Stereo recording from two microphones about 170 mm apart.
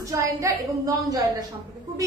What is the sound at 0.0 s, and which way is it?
Speech, 20° right (ahead or behind).